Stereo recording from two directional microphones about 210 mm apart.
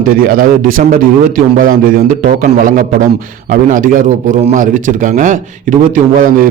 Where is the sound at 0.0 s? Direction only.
45° right (ahead or behind).